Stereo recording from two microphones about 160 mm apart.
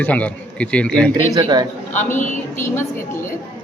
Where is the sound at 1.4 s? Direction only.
30° right (ahead or behind).